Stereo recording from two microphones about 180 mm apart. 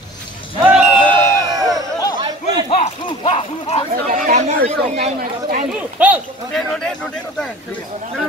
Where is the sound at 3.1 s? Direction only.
30° left (ahead or behind).